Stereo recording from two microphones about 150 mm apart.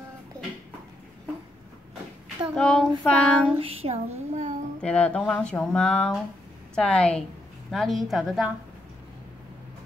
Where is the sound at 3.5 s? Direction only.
40° right (ahead or behind).